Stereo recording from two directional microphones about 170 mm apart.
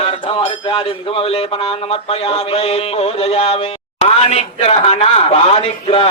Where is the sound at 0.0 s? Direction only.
35° left (ahead or behind).